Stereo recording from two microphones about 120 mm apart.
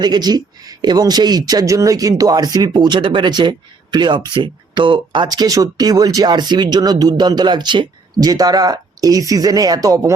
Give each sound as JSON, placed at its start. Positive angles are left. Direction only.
{"t": 0.0, "sound": "speech", "side_deg": -35}